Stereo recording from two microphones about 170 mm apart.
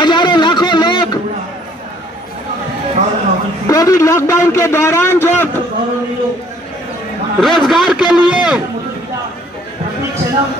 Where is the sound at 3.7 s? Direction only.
20° left (ahead or behind).